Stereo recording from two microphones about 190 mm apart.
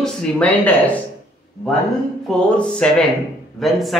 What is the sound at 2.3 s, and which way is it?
Speech, 5° left (ahead or behind).